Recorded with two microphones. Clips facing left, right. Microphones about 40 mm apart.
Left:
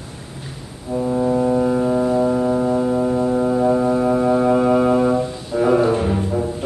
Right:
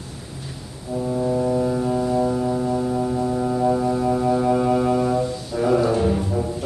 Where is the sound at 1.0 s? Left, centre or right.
Centre.